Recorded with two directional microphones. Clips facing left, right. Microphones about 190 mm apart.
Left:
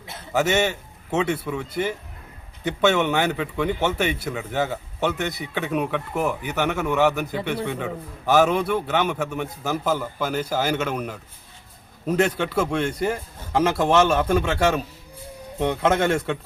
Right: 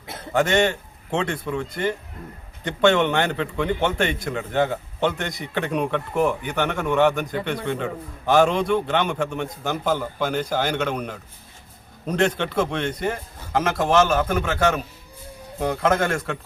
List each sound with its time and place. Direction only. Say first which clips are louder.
0.3 s a man's voice: right 1 dB; 5° left (ahead or behind)
13.8 s a man's voice: right 1 dB; 25° left (ahead or behind)